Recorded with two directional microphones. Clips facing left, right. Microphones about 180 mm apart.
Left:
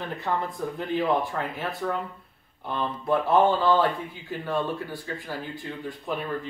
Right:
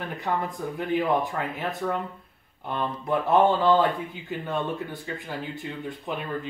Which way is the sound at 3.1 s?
20° right (ahead or behind).